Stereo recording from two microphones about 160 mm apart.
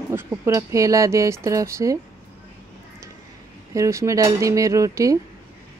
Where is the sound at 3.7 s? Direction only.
20° right (ahead or behind).